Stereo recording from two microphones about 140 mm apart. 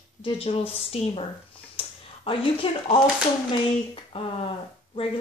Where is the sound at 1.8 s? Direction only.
40° left (ahead or behind).